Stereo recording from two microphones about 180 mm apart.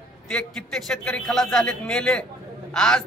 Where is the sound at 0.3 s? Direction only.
5° left (ahead or behind).